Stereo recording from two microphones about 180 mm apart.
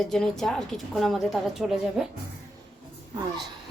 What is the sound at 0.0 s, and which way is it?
A woman's voice, centre (ahead or behind).